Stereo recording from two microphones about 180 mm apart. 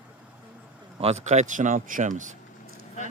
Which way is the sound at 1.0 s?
40° right (ahead or behind).